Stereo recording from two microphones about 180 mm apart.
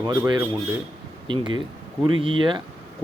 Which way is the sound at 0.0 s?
20° right (ahead or behind).